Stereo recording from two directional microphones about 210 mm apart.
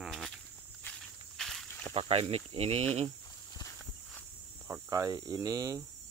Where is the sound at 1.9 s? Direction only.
30° right (ahead or behind).